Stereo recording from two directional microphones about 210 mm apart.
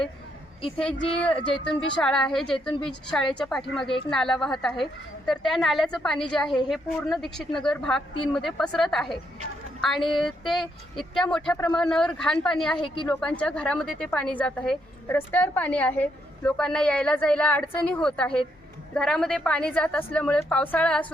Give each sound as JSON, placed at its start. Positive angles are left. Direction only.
{"t": 1.2, "sound": "a woman's voice", "side_deg": 5}
{"t": 12.8, "sound": "a woman's voice", "side_deg": 25}
{"t": 13.1, "sound": "a woman's voice", "side_deg": 5}